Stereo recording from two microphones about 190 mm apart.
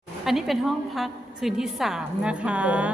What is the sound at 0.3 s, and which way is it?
A woman's voice, centre (ahead or behind).